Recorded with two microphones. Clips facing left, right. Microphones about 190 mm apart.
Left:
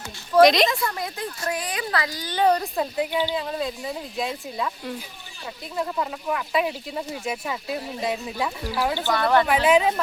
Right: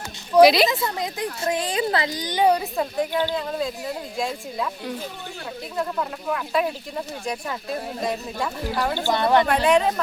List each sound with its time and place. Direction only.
0.4 s a woman's voice: 5° right (ahead or behind)
0.7 s speech: 20° right (ahead or behind)
3.0 s speech: 10° left (ahead or behind)
9.0 s speech: 20° right (ahead or behind)
9.5 s speech: 5° left (ahead or behind)